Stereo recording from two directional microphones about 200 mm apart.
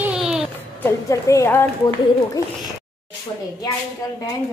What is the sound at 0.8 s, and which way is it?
A woman's voice, 15° left (ahead or behind).